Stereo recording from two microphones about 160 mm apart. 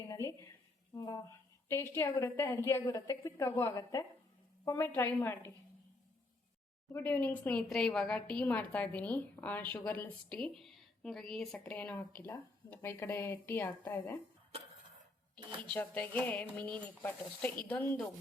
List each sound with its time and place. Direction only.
0.1 s a sound: 20° left (ahead or behind)
0.9 s a woman's voice: 20° left (ahead or behind)
6.9 s a woman's voice: 10° left (ahead or behind)
14.5 s tick-tock: 40° right (ahead or behind)
15.6 s a woman's voice: 10° left (ahead or behind)